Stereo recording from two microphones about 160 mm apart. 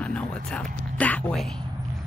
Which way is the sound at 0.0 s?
5° left (ahead or behind).